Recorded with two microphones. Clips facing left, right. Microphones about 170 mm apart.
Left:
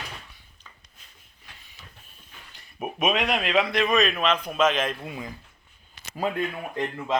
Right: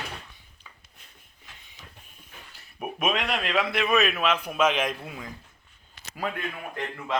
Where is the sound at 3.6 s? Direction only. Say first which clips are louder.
Even; 5° right (ahead or behind).